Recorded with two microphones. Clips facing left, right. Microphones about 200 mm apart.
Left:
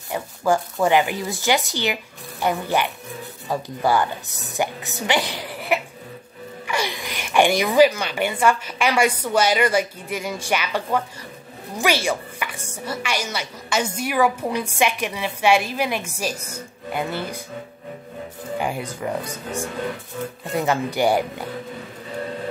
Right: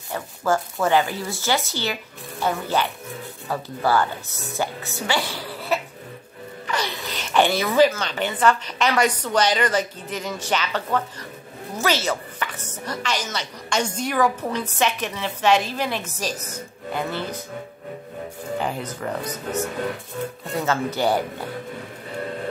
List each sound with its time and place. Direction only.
0.1 s a woman's voice: 15° left (ahead or behind)
18.6 s speech: 10° left (ahead or behind)